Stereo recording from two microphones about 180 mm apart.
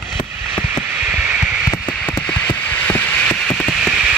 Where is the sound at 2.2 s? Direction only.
5° left (ahead or behind).